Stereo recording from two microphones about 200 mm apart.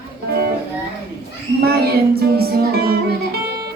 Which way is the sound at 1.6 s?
50° right (ahead or behind).